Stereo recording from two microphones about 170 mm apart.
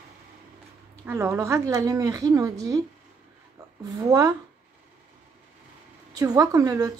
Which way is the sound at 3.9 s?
20° right (ahead or behind).